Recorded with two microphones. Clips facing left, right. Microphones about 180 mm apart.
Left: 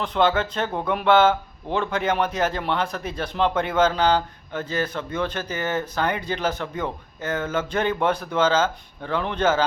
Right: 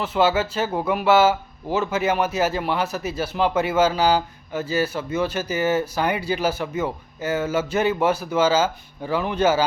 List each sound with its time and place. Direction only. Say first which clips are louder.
0.0 s speech: right 1 dB; 5° right (ahead or behind)